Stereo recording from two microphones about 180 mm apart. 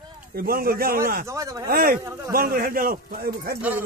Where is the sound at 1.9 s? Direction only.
15° right (ahead or behind).